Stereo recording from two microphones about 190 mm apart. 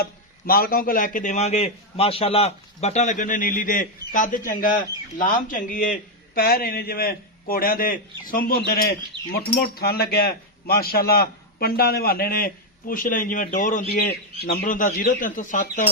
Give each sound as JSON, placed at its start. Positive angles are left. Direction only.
{"t": 0.0, "sound": "speech", "side_deg": 50}